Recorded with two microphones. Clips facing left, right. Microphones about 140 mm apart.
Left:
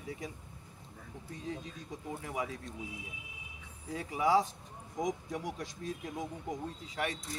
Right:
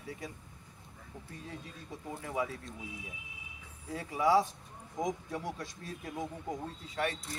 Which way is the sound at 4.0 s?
15° left (ahead or behind).